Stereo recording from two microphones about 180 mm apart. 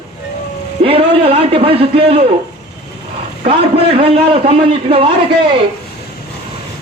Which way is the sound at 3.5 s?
30° right (ahead or behind).